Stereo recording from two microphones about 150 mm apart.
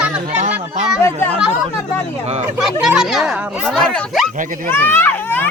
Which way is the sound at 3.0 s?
Centre (ahead or behind).